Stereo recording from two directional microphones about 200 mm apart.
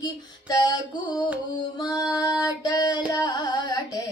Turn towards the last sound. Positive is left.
turn(degrees=20)  # may be behind; listen again after turning